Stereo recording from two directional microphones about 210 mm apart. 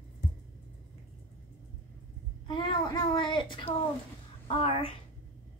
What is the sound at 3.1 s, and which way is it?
A woman's voice, 20° left (ahead or behind).